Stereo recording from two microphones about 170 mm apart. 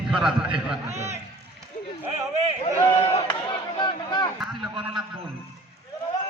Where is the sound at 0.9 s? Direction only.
40° right (ahead or behind).